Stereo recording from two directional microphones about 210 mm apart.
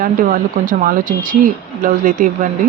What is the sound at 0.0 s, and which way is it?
Speech, 40° right (ahead or behind).